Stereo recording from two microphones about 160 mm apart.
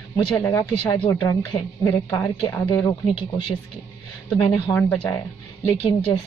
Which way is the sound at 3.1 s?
30° left (ahead or behind).